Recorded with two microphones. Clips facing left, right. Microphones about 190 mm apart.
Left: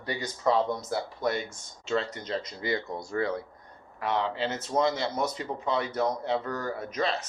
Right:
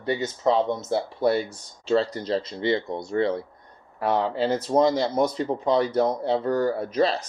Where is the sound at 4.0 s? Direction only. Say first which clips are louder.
Right 5 dB; 40° right (ahead or behind).